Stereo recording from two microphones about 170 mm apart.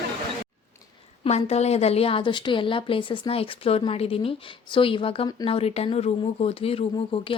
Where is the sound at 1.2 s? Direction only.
40° left (ahead or behind).